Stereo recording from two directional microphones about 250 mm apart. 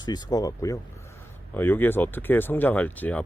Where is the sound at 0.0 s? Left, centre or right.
Centre.